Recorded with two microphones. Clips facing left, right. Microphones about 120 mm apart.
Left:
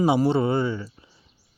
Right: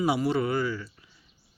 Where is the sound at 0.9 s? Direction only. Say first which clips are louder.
Left 5 dB; 30° left (ahead or behind).